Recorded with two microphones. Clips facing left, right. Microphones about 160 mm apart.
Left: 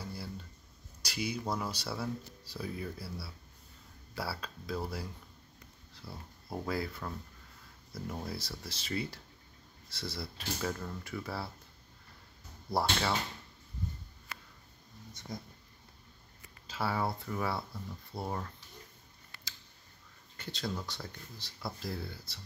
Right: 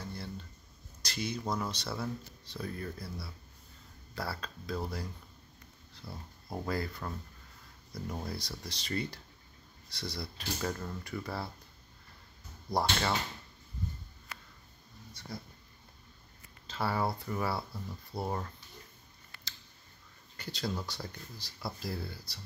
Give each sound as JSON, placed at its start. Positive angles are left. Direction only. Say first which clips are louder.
{"t": 0.0, "sound": "a sound", "louder": "even", "side_deg": 10}
{"t": 1.0, "sound": "speech", "louder": "even", "side_deg": 10}
{"t": 12.7, "sound": "speech", "louder": "right 1 dB", "side_deg": 5}
{"t": 15.1, "sound": "speech", "louder": "left 1 dB", "side_deg": 20}
{"t": 16.6, "sound": "speech", "louder": "right 1 dB", "side_deg": 5}
{"t": 20.3, "sound": "speech", "louder": "right 1 dB", "side_deg": 0}